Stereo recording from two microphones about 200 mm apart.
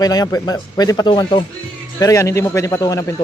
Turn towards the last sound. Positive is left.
turn(degrees=15)  # may be behind; listen again after turning